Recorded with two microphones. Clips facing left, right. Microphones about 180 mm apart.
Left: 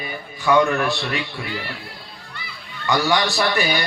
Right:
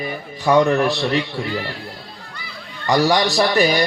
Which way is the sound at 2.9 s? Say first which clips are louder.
Right 4 dB; 35° right (ahead or behind).